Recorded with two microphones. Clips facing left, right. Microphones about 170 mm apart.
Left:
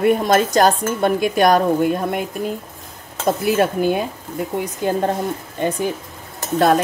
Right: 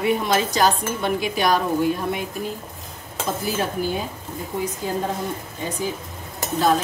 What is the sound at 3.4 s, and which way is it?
Dishes, 65° left (ahead or behind).